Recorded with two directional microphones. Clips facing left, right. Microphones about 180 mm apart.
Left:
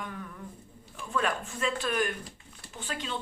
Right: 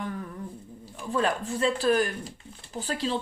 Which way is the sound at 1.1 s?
35° right (ahead or behind).